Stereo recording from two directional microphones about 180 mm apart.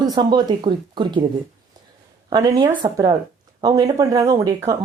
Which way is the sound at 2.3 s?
25° right (ahead or behind).